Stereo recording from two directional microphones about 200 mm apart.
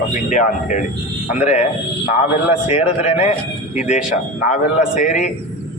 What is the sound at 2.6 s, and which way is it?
A man's voice, 35° left (ahead or behind).